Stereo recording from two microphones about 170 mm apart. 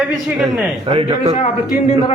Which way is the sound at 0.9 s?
35° right (ahead or behind).